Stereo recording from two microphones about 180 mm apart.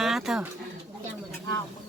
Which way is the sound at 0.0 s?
Centre (ahead or behind).